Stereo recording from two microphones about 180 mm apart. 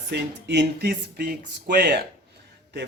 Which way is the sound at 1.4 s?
55° right (ahead or behind).